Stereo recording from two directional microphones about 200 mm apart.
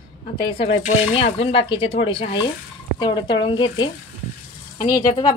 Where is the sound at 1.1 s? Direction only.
30° left (ahead or behind).